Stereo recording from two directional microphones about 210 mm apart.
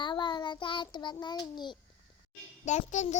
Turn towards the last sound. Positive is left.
turn(degrees=35)  # may be behind; listen again after turning